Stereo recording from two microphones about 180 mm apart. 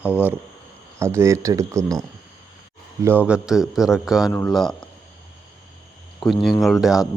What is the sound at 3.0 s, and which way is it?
Speech, 10° right (ahead or behind).